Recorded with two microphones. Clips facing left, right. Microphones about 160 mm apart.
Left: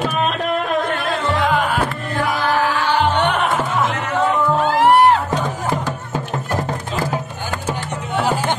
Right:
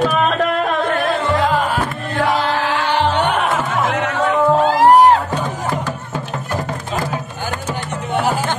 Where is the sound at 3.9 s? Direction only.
75° right (ahead or behind).